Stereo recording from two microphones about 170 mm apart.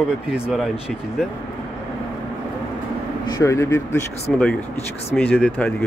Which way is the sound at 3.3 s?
15° left (ahead or behind).